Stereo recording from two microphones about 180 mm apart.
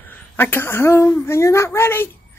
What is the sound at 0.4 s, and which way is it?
Speech, 10° left (ahead or behind).